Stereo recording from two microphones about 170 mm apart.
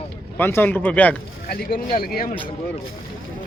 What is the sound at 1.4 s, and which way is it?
Speech, 60° left (ahead or behind).